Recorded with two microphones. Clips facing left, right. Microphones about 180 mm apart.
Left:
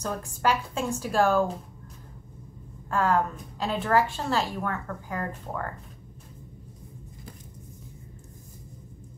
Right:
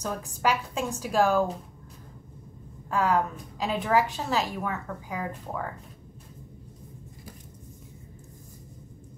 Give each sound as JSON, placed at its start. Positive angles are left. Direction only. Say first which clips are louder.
{"t": 0.0, "sound": "a woman's voice", "louder": "left 1 dB", "side_deg": 0}
{"t": 2.9, "sound": "a woman's voice", "louder": "even", "side_deg": -5}